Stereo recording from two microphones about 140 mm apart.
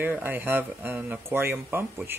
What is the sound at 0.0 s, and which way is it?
Speech, 15° right (ahead or behind).